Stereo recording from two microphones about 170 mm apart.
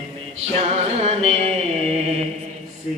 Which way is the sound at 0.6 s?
40° right (ahead or behind).